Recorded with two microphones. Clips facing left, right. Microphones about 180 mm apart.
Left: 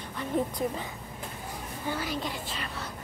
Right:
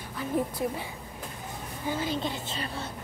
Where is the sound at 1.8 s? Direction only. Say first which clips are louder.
Right 3 dB; 25° right (ahead or behind).